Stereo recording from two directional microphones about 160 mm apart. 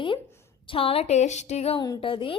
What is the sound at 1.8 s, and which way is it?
Speech, 30° left (ahead or behind).